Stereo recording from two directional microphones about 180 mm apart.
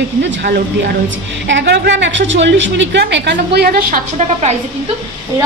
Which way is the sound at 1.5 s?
75° right (ahead or behind).